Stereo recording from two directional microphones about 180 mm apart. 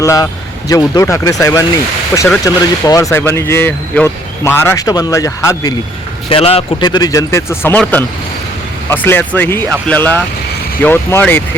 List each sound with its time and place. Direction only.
0.0 s speech: 20° left (ahead or behind)
6.2 s speech: 30° left (ahead or behind); by 11.4 s 10° left (ahead or behind)